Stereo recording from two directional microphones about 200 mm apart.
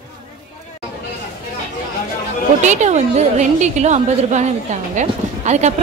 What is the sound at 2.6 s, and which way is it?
A woman's voice, 35° right (ahead or behind).